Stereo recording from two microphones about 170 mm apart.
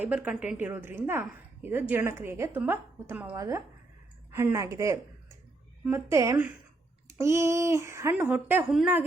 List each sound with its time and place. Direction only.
0.0 s a woman's voice: 10° right (ahead or behind)